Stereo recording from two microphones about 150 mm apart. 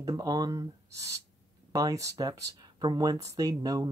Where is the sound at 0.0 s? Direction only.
25° right (ahead or behind).